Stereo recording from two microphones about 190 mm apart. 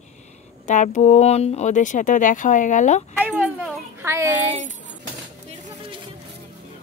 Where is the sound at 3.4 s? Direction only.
10° right (ahead or behind).